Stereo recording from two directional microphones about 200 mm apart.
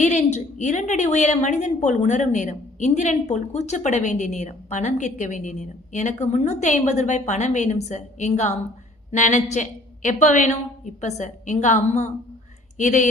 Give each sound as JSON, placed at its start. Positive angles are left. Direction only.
{"t": 0.0, "sound": "a woman's voice", "side_deg": 35}